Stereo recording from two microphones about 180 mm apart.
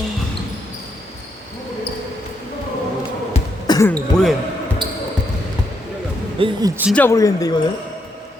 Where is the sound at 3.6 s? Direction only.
20° left (ahead or behind).